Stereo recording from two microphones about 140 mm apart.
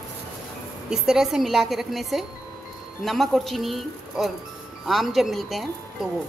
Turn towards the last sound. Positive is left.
turn(degrees=0)  # may be behind; listen again after turning